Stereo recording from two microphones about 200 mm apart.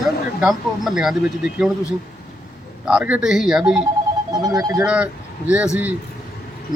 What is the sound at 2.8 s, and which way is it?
Speech, 5° right (ahead or behind).